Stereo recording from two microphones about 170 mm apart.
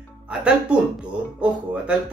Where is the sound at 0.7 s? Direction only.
5° right (ahead or behind).